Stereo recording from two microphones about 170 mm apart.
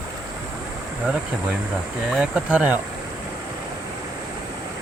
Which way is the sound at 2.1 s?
5° right (ahead or behind).